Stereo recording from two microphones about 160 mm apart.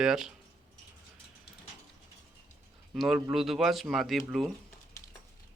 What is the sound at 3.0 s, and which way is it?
Speech, centre (ahead or behind).